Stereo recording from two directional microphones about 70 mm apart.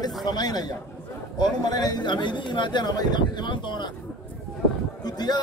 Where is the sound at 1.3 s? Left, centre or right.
Left.